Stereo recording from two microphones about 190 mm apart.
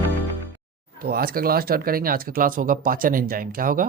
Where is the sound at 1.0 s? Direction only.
50° right (ahead or behind).